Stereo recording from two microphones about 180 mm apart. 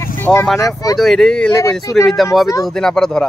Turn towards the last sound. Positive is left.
turn(degrees=5)  # may be behind; listen again after turning